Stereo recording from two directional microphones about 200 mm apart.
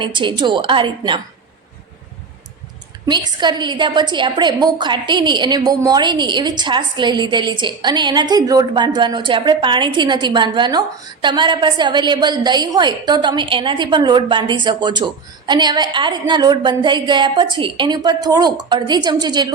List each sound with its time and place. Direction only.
0.0 s a woman's voice: 25° right (ahead or behind)
3.1 s a woman's voice: 20° right (ahead or behind)